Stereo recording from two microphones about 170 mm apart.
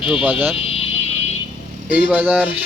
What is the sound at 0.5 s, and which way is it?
Vehicle, 35° left (ahead or behind).